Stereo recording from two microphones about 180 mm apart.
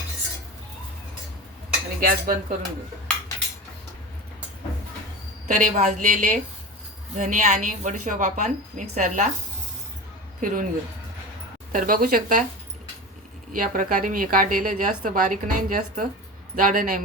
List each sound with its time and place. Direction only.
2.0 s cutlery: 55° right (ahead or behind)
5.5 s a woman's voice: 45° right (ahead or behind)
10.4 s a woman's voice: 45° right (ahead or behind)
11.7 s a woman's voice: 50° right (ahead or behind)
13.5 s a woman's voice: 50° right (ahead or behind)